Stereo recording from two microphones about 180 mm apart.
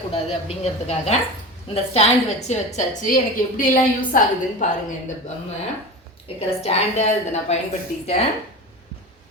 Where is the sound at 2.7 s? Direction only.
45° left (ahead or behind).